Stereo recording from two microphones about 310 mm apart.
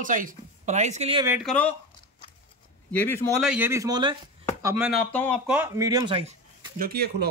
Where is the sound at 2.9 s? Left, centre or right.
Centre.